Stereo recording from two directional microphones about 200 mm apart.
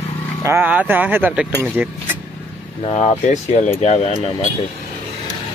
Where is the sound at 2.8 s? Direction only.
30° left (ahead or behind).